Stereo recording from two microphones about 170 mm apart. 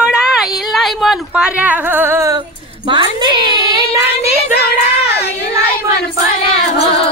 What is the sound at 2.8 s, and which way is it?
Speech, 25° right (ahead or behind).